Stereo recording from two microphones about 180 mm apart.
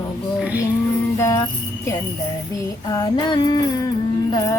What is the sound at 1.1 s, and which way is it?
Music, 15° left (ahead or behind).